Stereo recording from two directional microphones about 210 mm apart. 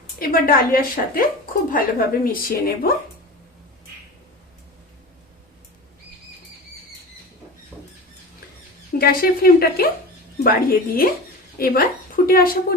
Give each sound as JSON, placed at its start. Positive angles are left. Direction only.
{"t": 0.2, "sound": "a woman's voice", "side_deg": 40}
{"t": 8.9, "sound": "a woman's voice", "side_deg": 45}